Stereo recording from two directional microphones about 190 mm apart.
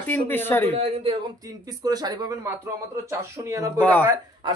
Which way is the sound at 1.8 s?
20° right (ahead or behind).